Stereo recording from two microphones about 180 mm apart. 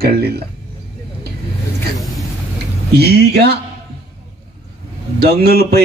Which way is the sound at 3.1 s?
65° right (ahead or behind).